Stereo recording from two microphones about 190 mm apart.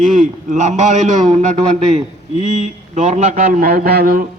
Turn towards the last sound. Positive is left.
turn(degrees=-50)  # may be behind; listen again after turning